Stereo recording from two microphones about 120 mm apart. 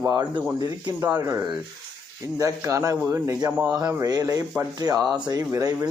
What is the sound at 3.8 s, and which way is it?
A man's voice, 30° right (ahead or behind).